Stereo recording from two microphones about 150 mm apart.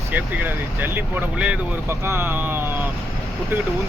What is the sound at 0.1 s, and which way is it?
Speech, 10° right (ahead or behind).